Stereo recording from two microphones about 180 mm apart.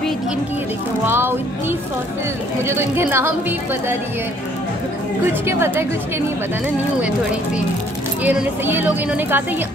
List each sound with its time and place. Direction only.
1.0 s speech: 10° right (ahead or behind)
2.6 s speech: 15° right (ahead or behind)
5.5 s speech: 15° right (ahead or behind)
8.2 s speech: 10° right (ahead or behind)